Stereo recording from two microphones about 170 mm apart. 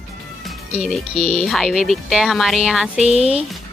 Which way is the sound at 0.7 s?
Centre (ahead or behind).